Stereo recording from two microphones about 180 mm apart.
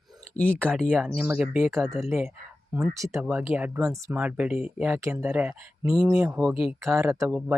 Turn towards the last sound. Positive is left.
turn(degrees=-5)  # may be behind; listen again after turning